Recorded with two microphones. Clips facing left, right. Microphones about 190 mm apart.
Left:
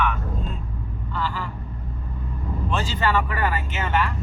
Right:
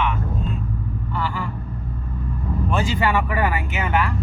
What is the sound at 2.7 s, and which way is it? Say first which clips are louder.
Speech: right 2 dB; 15° right (ahead or behind).